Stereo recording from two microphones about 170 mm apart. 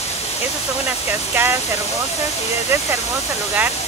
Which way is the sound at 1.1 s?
10° right (ahead or behind).